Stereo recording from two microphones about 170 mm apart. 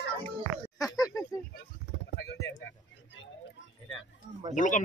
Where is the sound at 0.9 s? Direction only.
20° left (ahead or behind).